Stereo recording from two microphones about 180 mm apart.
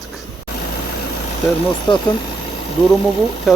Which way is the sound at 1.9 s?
25° left (ahead or behind).